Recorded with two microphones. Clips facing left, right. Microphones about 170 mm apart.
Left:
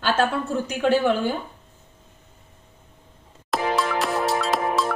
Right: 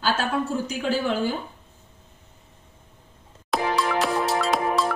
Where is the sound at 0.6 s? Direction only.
60° left (ahead or behind).